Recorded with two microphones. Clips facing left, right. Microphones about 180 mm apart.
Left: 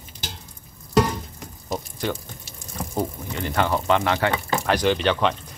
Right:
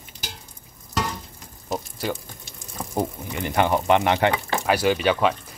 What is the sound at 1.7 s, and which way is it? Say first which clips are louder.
Water: even; 5° right (ahead or behind).